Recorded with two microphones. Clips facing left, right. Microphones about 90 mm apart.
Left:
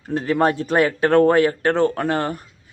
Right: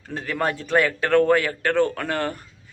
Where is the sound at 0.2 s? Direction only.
30° left (ahead or behind).